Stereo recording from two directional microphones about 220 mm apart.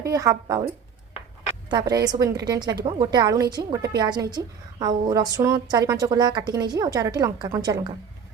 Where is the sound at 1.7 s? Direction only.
15° right (ahead or behind).